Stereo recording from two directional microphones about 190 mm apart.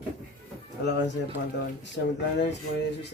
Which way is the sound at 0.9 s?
65° left (ahead or behind).